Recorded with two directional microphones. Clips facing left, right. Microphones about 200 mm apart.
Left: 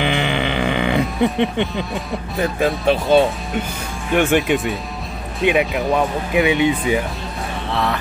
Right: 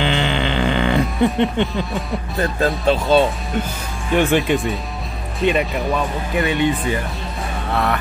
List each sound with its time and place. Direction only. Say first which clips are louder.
0.0 s music: even; 15° left (ahead or behind)
2.4 s speech: left 1 dB; 15° left (ahead or behind)
4.4 s speech: even; centre (ahead or behind)